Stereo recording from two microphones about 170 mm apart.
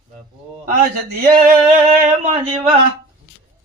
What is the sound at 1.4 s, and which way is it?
Singing, 55° right (ahead or behind).